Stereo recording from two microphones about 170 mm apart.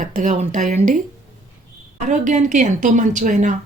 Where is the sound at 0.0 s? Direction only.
45° right (ahead or behind).